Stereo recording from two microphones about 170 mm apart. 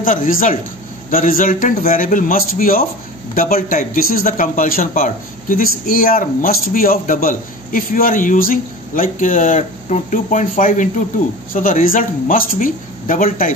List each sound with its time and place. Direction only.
0.0 s a man's voice: 55° left (ahead or behind)